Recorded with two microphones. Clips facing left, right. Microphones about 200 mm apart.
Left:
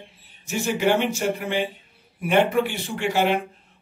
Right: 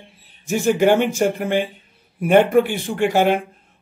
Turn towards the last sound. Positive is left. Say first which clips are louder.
# right 5 dB
turn(degrees=-50)  # may be behind; listen again after turning